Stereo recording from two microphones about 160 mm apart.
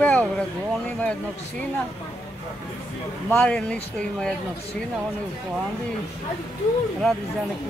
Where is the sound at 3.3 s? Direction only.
5° left (ahead or behind).